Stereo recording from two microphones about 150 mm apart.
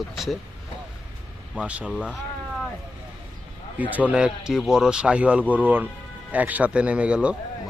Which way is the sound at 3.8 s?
10° right (ahead or behind).